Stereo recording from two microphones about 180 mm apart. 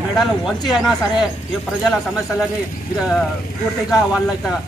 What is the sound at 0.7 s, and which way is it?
A man's voice, centre (ahead or behind).